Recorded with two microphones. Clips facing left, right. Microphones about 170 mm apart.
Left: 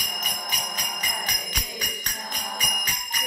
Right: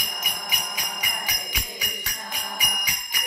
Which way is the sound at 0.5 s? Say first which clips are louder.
Even; 10° right (ahead or behind).